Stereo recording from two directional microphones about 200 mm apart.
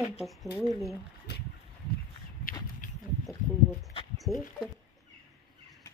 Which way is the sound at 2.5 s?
45° left (ahead or behind).